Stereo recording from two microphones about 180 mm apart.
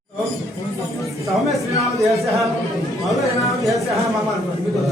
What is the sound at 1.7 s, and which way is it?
Speech, 20° left (ahead or behind).